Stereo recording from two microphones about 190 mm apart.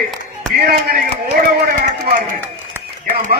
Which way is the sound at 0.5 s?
55° right (ahead or behind).